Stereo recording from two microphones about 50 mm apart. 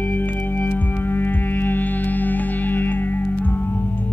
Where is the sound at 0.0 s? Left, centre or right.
Left.